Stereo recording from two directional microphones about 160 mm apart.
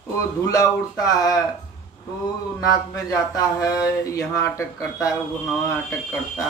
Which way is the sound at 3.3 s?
20° left (ahead or behind).